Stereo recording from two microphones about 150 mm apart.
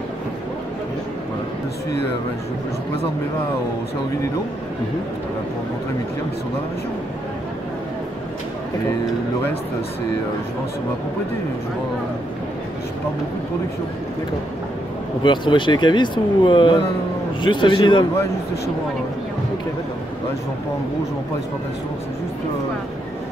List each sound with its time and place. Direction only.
15.2 s speech: 30° left (ahead or behind)